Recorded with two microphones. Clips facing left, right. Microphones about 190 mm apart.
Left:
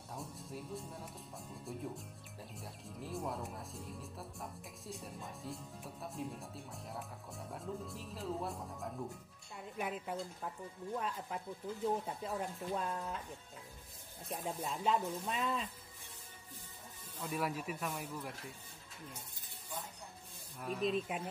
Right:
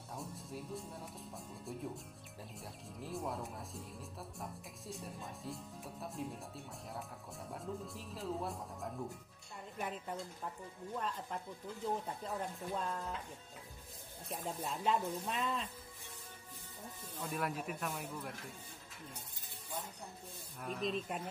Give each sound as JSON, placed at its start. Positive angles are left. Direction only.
{"t": 0.1, "sound": "speech", "side_deg": 0}
{"t": 14.3, "sound": "speech", "side_deg": 0}
{"t": 17.2, "sound": "speech", "side_deg": 0}
{"t": 20.6, "sound": "speech", "side_deg": 5}